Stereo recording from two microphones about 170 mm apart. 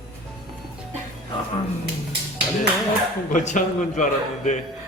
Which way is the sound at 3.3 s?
45° left (ahead or behind).